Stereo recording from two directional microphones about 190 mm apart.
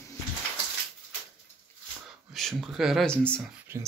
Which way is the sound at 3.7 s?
10° right (ahead or behind).